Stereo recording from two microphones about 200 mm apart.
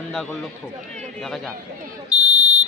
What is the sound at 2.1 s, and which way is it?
Buzzer, 35° right (ahead or behind).